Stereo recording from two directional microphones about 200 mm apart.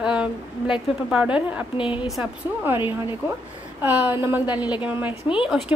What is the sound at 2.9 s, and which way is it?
Speech, 10° right (ahead or behind).